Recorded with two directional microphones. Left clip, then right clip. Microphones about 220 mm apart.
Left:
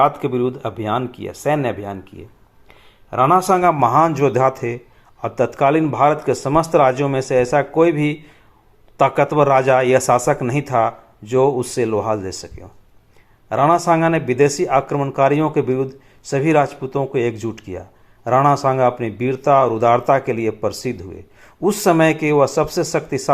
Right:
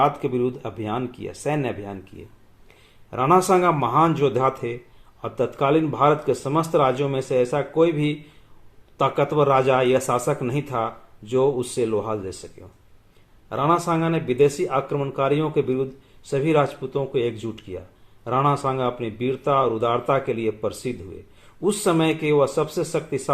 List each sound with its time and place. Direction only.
0.0 s speech: 15° left (ahead or behind)
13.5 s speech: 25° left (ahead or behind)